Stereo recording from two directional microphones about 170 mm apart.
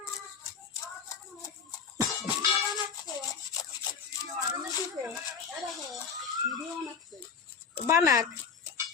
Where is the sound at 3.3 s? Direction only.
20° left (ahead or behind).